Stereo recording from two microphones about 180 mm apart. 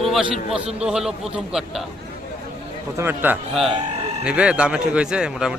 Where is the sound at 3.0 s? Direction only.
10° right (ahead or behind).